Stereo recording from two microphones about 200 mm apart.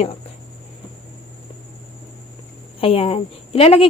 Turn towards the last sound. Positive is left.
turn(degrees=30)  # may be behind; listen again after turning